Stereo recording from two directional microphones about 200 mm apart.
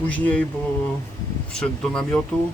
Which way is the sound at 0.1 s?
5° left (ahead or behind).